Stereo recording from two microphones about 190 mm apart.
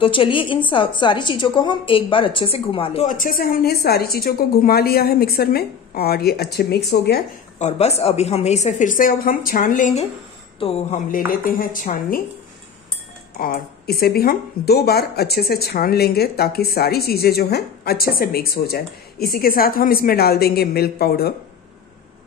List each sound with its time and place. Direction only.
0.0 s a woman's voice: 25° left (ahead or behind); by 7.2 s 60° left (ahead or behind)
7.5 s a woman's voice: 35° left (ahead or behind)
13.4 s speech: 50° left (ahead or behind)